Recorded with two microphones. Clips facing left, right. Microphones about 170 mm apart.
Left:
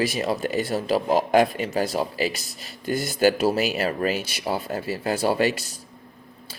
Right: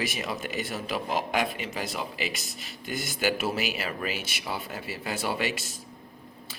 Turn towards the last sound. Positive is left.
turn(degrees=40)  # may be behind; listen again after turning